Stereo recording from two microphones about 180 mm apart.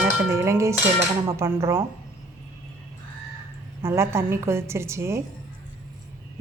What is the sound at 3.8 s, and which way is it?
A woman's voice, 15° right (ahead or behind).